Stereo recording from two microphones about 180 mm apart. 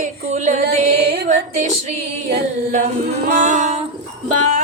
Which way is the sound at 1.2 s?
40° right (ahead or behind).